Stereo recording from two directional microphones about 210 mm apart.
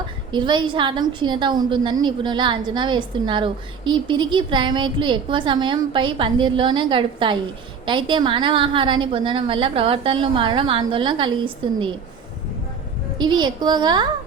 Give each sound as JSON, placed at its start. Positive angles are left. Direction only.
{"t": 0.3, "sound": "a woman's voice", "side_deg": -20}
{"t": 13.1, "sound": "a woman's voice", "side_deg": -20}